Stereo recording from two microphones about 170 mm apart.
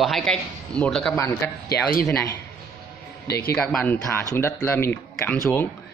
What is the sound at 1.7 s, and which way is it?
Speech, 60° left (ahead or behind).